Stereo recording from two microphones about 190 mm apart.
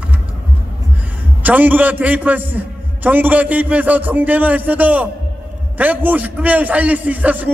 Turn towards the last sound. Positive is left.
turn(degrees=-10)  # may be behind; listen again after turning